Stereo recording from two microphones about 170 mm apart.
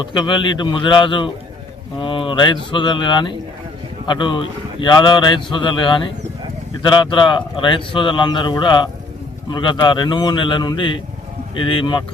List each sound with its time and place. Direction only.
0.0 s a man's voice: 25° left (ahead or behind)